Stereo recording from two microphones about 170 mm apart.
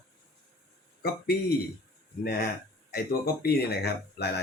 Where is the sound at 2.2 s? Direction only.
65° left (ahead or behind).